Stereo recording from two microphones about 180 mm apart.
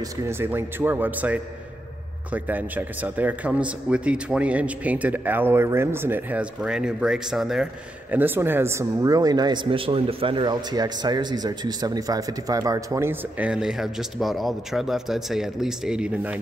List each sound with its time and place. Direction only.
0.3 s speech: 15° right (ahead or behind)